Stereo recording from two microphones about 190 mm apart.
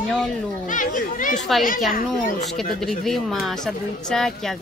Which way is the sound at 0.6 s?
45° left (ahead or behind).